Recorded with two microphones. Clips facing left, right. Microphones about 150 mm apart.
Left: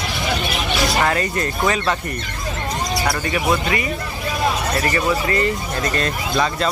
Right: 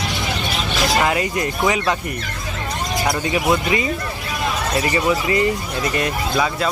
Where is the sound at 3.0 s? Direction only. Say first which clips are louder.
Right 2 dB; 20° right (ahead or behind).